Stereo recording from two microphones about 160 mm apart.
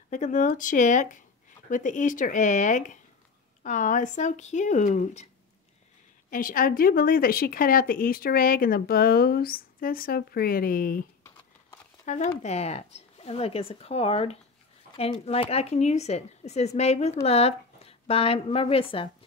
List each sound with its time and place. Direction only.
0.1 s speech: 50° left (ahead or behind)
6.3 s speech: 60° left (ahead or behind)
12.1 s speech: 50° left (ahead or behind); by 19.0 s 35° left (ahead or behind)